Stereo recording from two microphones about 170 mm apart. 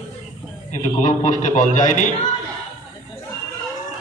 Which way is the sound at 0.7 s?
45° left (ahead or behind).